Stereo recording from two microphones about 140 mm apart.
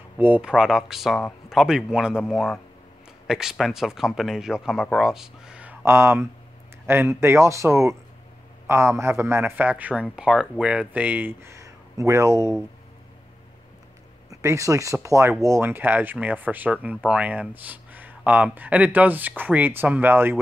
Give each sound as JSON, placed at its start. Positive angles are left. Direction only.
{"t": 0.2, "sound": "a man's voice", "side_deg": -10}
{"t": 14.3, "sound": "a man's voice", "side_deg": -20}